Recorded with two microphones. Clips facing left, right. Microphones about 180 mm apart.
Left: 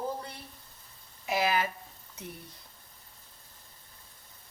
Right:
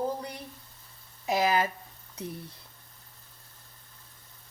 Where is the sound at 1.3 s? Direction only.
40° right (ahead or behind).